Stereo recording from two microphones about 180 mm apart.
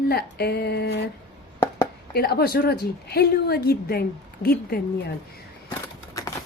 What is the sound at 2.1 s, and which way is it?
A woman's voice, 60° left (ahead or behind).